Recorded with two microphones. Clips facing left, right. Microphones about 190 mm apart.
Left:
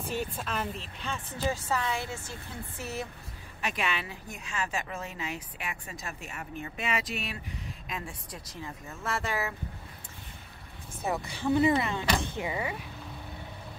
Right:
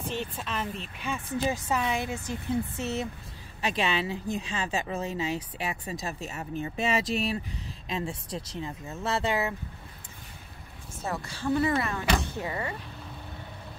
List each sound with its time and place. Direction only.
0.1 s speech: 5° left (ahead or behind)
0.9 s a woman's voice: 10° right (ahead or behind)
11.1 s speech: 15° left (ahead or behind)